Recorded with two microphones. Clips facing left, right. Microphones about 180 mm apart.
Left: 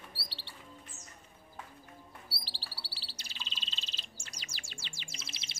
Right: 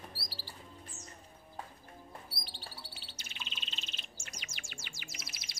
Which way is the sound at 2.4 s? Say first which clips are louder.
Right 1 dB; 30° left (ahead or behind).